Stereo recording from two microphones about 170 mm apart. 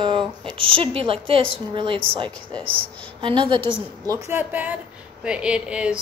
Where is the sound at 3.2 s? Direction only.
30° right (ahead or behind).